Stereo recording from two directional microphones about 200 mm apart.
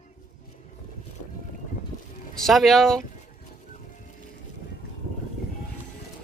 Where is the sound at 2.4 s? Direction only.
Centre (ahead or behind).